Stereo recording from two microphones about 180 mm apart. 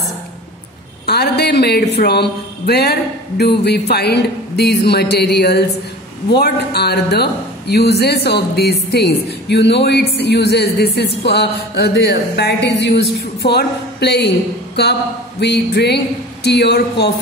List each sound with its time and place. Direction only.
1.0 s a man's voice: 65° left (ahead or behind)